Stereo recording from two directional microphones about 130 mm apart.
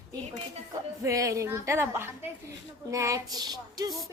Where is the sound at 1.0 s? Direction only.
25° right (ahead or behind).